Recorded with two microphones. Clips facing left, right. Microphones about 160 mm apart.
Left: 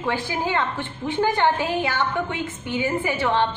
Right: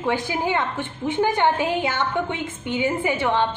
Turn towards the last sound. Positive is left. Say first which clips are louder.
# right 1 dB
turn(degrees=-15)  # may be behind; listen again after turning